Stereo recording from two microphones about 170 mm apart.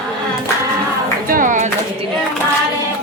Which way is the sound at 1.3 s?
50° right (ahead or behind).